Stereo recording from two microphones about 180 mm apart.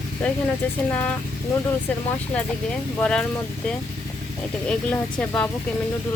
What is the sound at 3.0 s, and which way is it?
Speech, 5° left (ahead or behind).